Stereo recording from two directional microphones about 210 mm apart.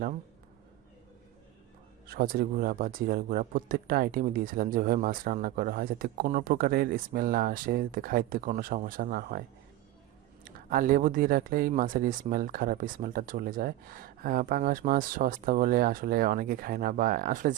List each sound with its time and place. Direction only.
2.0 s speech: 45° right (ahead or behind)
10.7 s speech: 40° right (ahead or behind)